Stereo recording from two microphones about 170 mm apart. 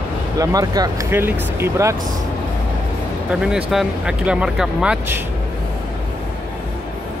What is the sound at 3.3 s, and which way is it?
Speech, 5° right (ahead or behind).